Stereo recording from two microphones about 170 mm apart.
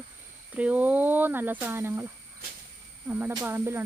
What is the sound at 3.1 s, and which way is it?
Speech, 10° right (ahead or behind).